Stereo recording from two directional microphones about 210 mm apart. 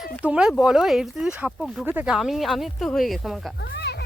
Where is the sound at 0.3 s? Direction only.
5° right (ahead or behind).